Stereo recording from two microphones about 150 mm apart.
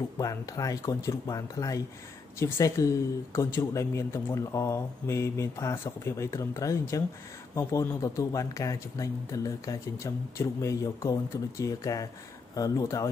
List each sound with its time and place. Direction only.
0.2 s speech: 25° left (ahead or behind)